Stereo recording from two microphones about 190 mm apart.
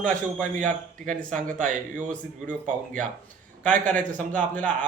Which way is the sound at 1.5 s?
40° right (ahead or behind).